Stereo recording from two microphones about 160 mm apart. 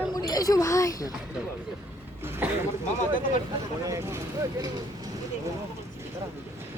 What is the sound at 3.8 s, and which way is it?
Speech, 20° right (ahead or behind).